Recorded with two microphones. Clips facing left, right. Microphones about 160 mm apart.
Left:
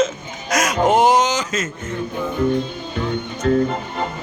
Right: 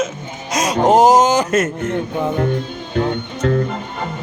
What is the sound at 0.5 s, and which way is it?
Speech, 35° right (ahead or behind).